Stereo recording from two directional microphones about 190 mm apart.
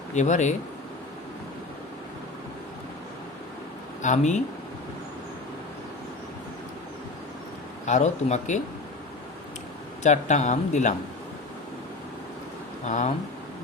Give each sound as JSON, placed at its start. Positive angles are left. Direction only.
{"t": 0.1, "sound": "speech", "side_deg": 40}
{"t": 4.0, "sound": "speech", "side_deg": 40}
{"t": 7.9, "sound": "speech", "side_deg": 40}
{"t": 10.0, "sound": "speech", "side_deg": 40}
{"t": 12.8, "sound": "speech", "side_deg": 40}